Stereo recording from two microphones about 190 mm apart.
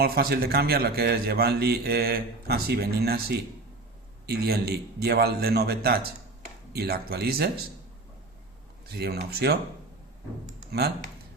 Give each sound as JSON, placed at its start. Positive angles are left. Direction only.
{"t": 0.0, "sound": "a man's voice", "side_deg": -55}
{"t": 8.9, "sound": "a man's voice", "side_deg": -60}
{"t": 10.7, "sound": "speech", "side_deg": -55}